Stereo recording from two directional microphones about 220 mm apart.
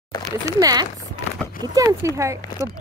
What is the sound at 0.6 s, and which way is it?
Speech, 15° right (ahead or behind).